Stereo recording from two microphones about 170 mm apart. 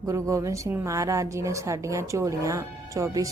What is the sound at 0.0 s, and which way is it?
A woman's voice, 20° right (ahead or behind).